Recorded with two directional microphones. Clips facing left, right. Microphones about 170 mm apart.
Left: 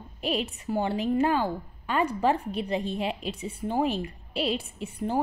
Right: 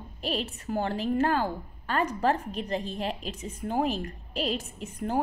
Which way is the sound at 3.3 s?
35° left (ahead or behind).